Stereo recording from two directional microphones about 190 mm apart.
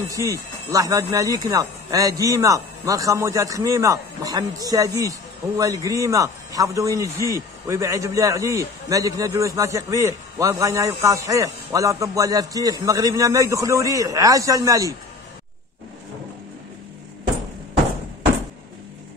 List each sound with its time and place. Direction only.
0.1 s a man's voice: 15° right (ahead or behind)